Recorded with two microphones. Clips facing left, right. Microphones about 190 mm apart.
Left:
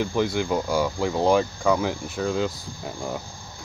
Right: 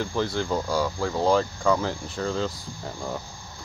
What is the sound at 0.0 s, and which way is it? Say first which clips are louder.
Speech: left 3 dB; 15° left (ahead or behind).